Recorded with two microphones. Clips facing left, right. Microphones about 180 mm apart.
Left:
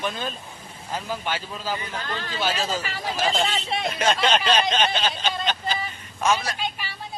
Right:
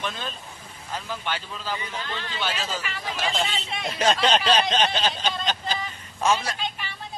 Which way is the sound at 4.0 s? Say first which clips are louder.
Right 1 dB; 35° right (ahead or behind).